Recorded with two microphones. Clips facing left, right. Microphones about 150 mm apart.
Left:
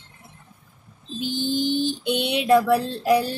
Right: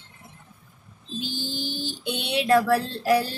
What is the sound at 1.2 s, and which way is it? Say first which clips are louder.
Speech: left 8 dB; 20° left (ahead or behind).